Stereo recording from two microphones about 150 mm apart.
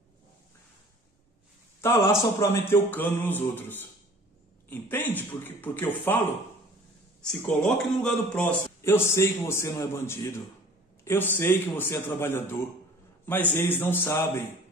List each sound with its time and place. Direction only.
1.8 s a man's voice: 20° left (ahead or behind)
7.2 s a man's voice: 5° left (ahead or behind)